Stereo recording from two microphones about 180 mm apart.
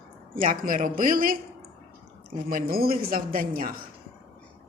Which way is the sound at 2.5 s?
55° right (ahead or behind).